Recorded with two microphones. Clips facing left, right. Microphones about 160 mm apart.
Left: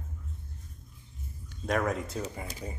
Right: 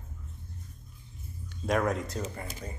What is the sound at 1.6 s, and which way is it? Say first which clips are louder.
Speech: right 1 dB; centre (ahead or behind).